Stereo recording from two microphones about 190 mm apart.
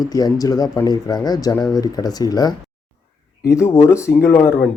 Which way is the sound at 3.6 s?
15° left (ahead or behind).